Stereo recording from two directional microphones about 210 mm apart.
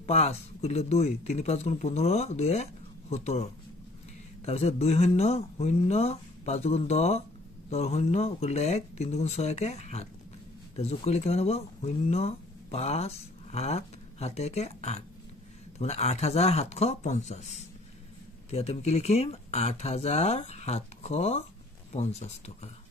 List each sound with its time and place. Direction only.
0.0 s speech: 30° left (ahead or behind)
4.5 s speech: 30° left (ahead or behind)
18.5 s speech: 30° left (ahead or behind)